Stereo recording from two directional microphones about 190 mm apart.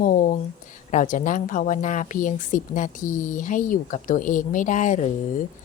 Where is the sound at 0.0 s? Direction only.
45° left (ahead or behind).